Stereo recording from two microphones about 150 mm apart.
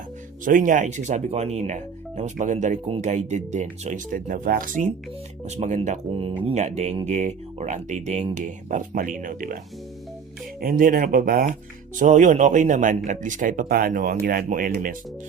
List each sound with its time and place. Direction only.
0.4 s speech: 60° right (ahead or behind)
5.5 s speech: 50° right (ahead or behind); by 9.6 s 65° right (ahead or behind)
10.6 s speech: 70° right (ahead or behind)
11.9 s speech: 55° right (ahead or behind)